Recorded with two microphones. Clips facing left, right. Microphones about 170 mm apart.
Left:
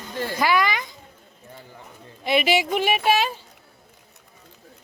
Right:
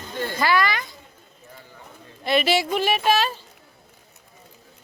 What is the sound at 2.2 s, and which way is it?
Speech, 10° left (ahead or behind).